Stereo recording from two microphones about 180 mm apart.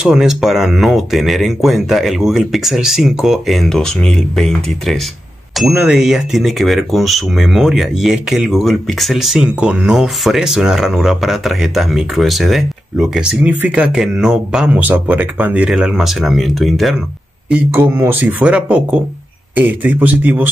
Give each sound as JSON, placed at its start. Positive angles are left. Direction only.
{"t": 0.0, "sound": "speech", "side_deg": -5}
{"t": 17.5, "sound": "speech", "side_deg": -10}